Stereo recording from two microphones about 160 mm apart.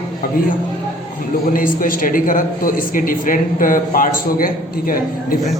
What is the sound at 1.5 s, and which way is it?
Speech, 60° left (ahead or behind).